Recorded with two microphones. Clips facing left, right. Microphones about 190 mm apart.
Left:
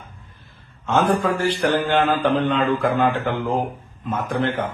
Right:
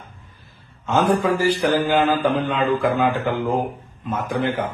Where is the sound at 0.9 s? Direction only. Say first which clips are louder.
Right 1 dB; 5° right (ahead or behind).